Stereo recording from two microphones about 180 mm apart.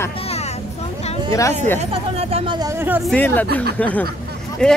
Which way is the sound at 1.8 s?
35° right (ahead or behind).